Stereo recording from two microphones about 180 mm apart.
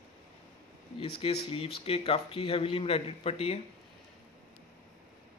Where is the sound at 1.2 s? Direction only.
30° left (ahead or behind).